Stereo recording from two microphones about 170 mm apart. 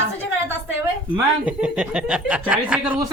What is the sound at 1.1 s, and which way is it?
Speech, 5° right (ahead or behind).